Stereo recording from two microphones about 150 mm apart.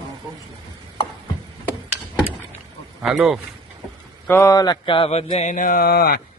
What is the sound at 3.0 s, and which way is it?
Speech, 5° right (ahead or behind).